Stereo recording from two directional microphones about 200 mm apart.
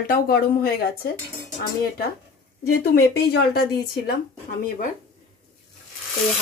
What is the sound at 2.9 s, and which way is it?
Speech, 55° left (ahead or behind).